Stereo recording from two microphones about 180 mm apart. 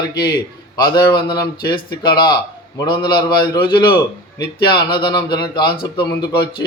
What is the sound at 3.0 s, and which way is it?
Speech, 60° left (ahead or behind).